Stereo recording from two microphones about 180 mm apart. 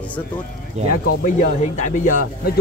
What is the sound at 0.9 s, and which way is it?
Speech, 50° left (ahead or behind).